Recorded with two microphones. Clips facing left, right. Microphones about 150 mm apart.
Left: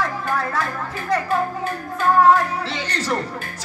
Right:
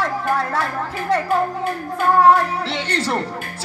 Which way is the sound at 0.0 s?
30° right (ahead or behind).